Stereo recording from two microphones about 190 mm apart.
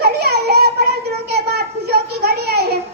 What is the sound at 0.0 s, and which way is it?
Children playing, 55° right (ahead or behind).